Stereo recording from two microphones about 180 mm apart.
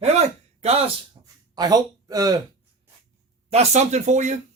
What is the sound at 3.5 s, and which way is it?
Speech, 40° right (ahead or behind).